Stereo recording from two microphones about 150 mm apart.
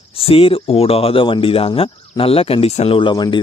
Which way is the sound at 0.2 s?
40° left (ahead or behind).